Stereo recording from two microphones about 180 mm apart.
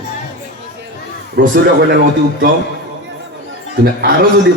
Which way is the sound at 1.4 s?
60° right (ahead or behind).